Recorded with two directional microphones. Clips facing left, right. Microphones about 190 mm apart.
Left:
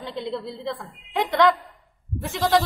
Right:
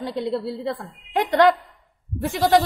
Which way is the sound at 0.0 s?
10° right (ahead or behind).